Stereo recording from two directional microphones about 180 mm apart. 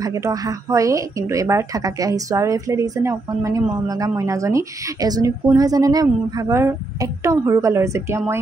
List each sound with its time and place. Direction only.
0.0 s a woman's voice: 20° right (ahead or behind)